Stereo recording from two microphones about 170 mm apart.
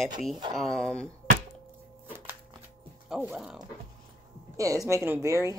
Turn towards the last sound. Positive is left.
turn(degrees=-15)  # may be behind; listen again after turning